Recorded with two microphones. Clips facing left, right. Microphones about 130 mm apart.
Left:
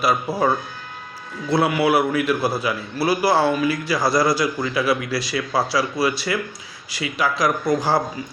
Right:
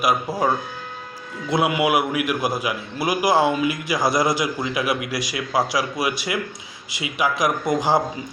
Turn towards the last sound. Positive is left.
turn(degrees=-20)  # may be behind; listen again after turning